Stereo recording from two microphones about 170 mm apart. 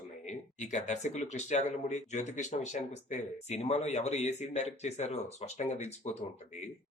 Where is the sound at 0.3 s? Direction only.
45° left (ahead or behind).